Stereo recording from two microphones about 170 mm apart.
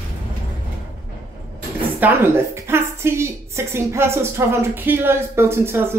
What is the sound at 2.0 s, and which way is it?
A woman's voice, 10° right (ahead or behind).